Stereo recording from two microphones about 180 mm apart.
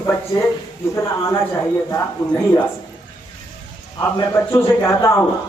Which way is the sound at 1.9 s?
15° left (ahead or behind).